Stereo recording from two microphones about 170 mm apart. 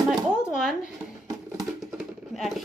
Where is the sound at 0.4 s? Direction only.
5° right (ahead or behind).